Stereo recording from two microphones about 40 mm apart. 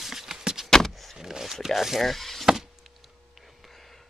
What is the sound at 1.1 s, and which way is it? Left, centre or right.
Zipper, centre.